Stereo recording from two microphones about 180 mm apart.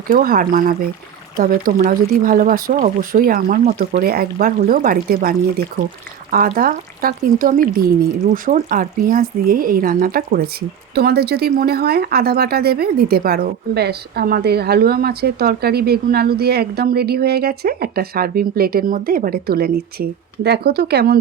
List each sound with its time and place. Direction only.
0.1 s a woman's voice: 50° right (ahead or behind)